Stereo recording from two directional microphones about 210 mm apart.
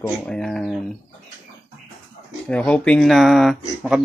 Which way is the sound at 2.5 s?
5° left (ahead or behind).